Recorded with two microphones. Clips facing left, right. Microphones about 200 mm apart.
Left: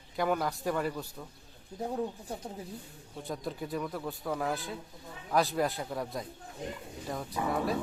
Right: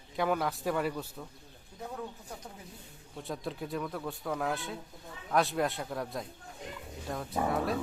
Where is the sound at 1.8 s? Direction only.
30° left (ahead or behind).